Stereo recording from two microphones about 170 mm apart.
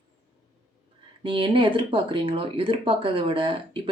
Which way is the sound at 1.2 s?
30° right (ahead or behind).